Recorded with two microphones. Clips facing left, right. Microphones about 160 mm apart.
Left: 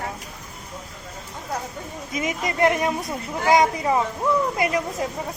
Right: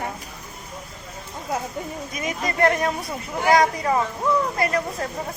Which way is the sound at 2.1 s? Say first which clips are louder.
Left 5 dB; 20° left (ahead or behind).